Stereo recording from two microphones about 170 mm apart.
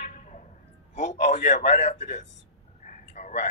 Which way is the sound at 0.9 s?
45° left (ahead or behind).